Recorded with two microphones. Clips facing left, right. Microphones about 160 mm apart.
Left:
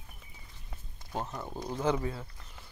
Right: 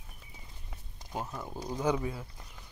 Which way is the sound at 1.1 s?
10° right (ahead or behind).